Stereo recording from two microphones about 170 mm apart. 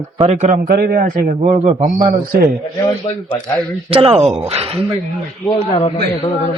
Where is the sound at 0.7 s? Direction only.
60° right (ahead or behind).